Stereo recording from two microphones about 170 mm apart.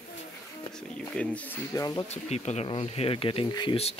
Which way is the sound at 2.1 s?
40° left (ahead or behind).